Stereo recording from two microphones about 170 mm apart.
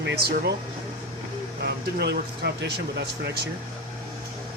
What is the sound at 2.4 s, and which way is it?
Speech, 75° right (ahead or behind).